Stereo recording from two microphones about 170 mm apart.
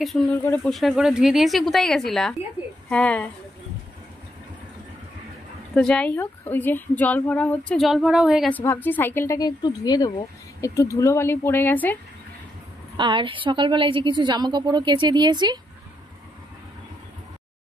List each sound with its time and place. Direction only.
0.7 s speech: centre (ahead or behind)
5.8 s speech: 5° left (ahead or behind)
8.5 s speech: 10° left (ahead or behind)
12.9 s a woman's voice: 30° right (ahead or behind)